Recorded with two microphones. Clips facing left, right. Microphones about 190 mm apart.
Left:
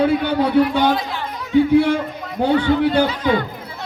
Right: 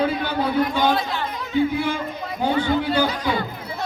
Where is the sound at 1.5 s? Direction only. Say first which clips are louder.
Left 8 dB; 75° left (ahead or behind).